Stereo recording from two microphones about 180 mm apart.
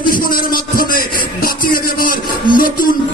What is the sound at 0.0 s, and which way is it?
Music, 50° left (ahead or behind).